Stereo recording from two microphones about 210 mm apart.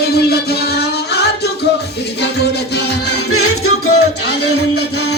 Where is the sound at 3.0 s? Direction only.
90° left.